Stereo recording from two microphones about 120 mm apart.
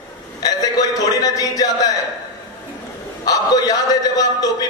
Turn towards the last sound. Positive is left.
turn(degrees=30)  # may be behind; listen again after turning